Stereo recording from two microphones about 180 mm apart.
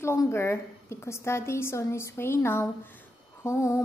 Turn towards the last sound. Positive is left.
turn(degrees=15)  # may be behind; listen again after turning